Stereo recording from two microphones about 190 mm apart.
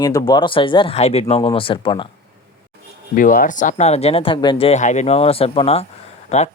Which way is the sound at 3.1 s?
45° left (ahead or behind).